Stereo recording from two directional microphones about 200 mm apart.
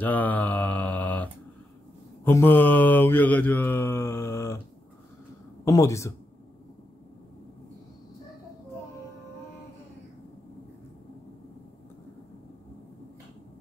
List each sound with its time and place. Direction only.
0.0 s mantra: 10° left (ahead or behind)
5.7 s mantra: 15° left (ahead or behind)